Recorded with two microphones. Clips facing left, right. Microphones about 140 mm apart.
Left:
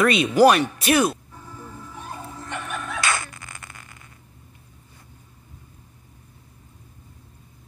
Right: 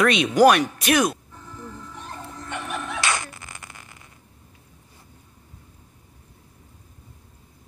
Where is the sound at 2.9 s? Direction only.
20° right (ahead or behind).